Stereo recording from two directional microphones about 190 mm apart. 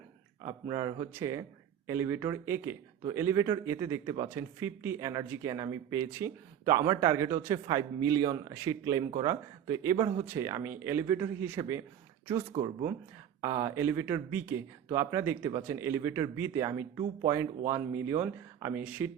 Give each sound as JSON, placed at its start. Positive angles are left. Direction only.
{"t": 0.4, "sound": "speech", "side_deg": -20}
{"t": 13.4, "sound": "speech", "side_deg": -15}